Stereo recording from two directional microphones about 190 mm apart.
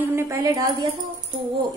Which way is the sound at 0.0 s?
10° right (ahead or behind).